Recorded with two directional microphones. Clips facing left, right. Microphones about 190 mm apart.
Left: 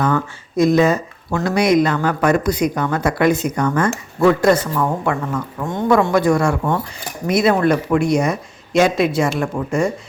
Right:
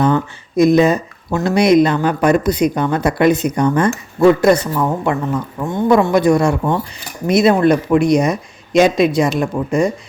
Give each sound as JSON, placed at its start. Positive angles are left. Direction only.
{"t": 0.0, "sound": "speech", "side_deg": -20}